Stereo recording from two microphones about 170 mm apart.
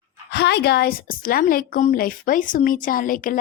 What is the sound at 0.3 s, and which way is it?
A woman's voice, 80° left.